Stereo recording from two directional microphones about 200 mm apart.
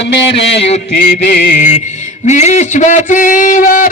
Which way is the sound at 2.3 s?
35° left (ahead or behind).